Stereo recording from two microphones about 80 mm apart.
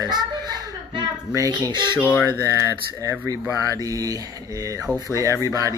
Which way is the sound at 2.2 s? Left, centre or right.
Left.